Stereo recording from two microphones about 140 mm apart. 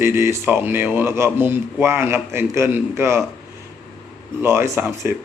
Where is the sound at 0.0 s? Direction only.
20° right (ahead or behind).